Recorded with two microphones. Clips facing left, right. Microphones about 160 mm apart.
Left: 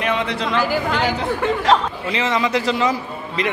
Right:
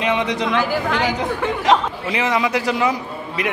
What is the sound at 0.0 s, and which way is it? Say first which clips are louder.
Speech: right 2 dB; 20° right (ahead or behind).